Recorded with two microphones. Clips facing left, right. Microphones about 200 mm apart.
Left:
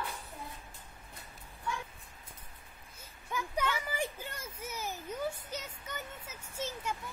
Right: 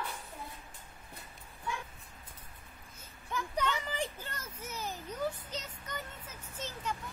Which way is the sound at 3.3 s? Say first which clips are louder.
Even; 10° left (ahead or behind).